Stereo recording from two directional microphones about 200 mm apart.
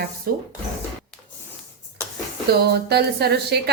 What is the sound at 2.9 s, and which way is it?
Speech, 55° right (ahead or behind).